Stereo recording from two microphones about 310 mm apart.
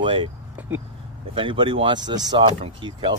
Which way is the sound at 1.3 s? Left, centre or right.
Centre.